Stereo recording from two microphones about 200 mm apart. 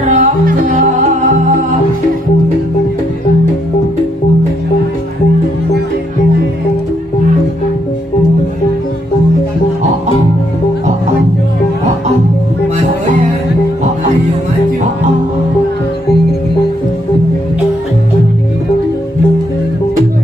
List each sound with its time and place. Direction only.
0.1 s music: 35° right (ahead or behind)